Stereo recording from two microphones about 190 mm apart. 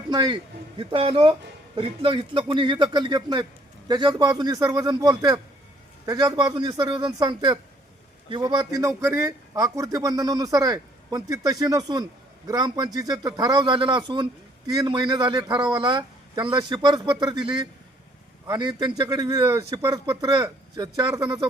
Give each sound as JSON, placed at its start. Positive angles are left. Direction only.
{"t": 0.1, "sound": "a man's voice", "side_deg": -25}